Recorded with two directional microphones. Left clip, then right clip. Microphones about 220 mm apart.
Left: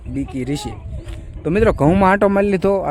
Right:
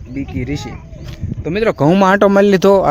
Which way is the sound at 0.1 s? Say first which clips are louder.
Right 1 dB; 10° left (ahead or behind).